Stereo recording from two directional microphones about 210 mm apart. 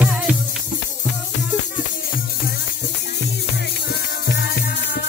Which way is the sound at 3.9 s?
50° left (ahead or behind).